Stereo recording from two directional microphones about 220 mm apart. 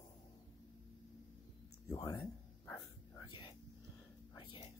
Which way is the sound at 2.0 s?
15° left (ahead or behind).